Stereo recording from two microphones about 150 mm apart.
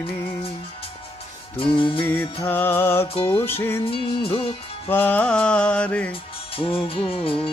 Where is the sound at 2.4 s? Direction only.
15° left (ahead or behind).